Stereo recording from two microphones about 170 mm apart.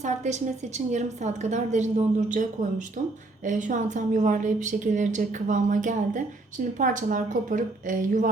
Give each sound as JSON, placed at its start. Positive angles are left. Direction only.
{"t": 0.0, "sound": "a woman's voice", "side_deg": -45}